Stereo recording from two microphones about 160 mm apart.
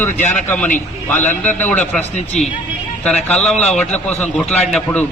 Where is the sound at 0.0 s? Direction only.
10° left (ahead or behind).